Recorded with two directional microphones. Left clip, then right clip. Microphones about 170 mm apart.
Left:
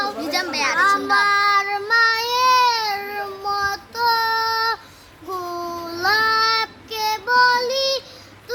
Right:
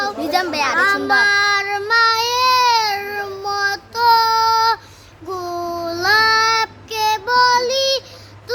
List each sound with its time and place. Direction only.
0.2 s children playing: 50° right (ahead or behind)
1.1 s child singing: 10° right (ahead or behind)
8.5 s a sound: 20° right (ahead or behind)